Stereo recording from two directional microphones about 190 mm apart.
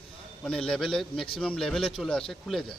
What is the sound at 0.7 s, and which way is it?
Speech, 5° left (ahead or behind).